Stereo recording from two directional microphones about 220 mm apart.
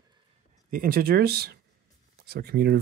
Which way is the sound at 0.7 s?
40° right (ahead or behind).